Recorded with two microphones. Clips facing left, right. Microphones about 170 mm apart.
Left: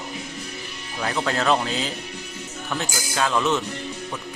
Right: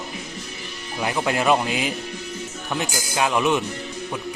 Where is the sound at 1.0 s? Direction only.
15° right (ahead or behind).